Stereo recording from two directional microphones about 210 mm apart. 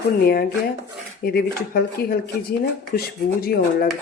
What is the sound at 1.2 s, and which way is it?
Speech, 45° left (ahead or behind).